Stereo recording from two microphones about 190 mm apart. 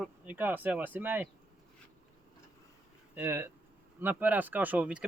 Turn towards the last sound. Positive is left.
turn(degrees=-5)  # may be behind; listen again after turning